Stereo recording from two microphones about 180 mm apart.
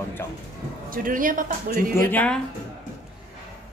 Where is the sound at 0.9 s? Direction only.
50° right (ahead or behind).